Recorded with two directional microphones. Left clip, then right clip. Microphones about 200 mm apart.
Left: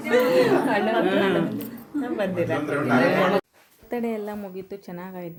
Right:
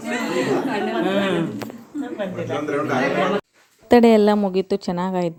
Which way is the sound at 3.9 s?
45° right (ahead or behind).